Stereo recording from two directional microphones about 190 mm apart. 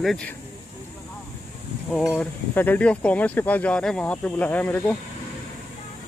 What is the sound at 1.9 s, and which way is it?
Speech, 5° left (ahead or behind).